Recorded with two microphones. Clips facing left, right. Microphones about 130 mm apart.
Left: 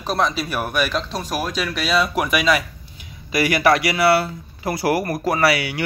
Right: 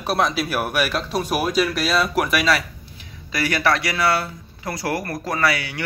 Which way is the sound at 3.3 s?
15° left (ahead or behind).